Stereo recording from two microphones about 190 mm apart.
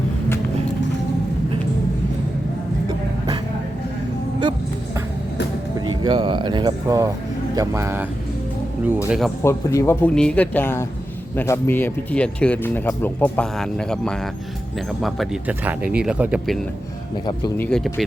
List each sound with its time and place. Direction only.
6.0 s music: 25° right (ahead or behind)
7.5 s speech: 15° right (ahead or behind)
9.0 s speech: centre (ahead or behind)
9.4 s speech: 15° left (ahead or behind); by 16.6 s 5° right (ahead or behind)
17.6 s speech: 5° left (ahead or behind)